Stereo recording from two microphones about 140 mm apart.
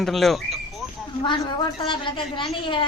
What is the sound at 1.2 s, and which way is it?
A woman's voice, 35° left (ahead or behind).